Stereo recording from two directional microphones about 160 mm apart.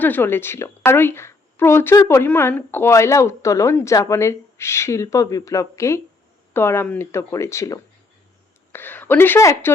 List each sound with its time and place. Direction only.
0.0 s a woman's voice: 10° left (ahead or behind)